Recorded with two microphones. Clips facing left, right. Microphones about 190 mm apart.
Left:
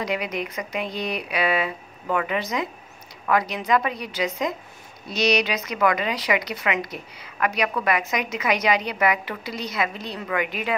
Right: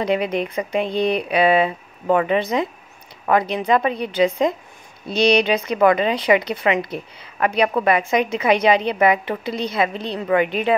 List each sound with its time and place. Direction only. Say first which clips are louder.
0.0 s a woman's voice: right 7 dB; 30° right (ahead or behind)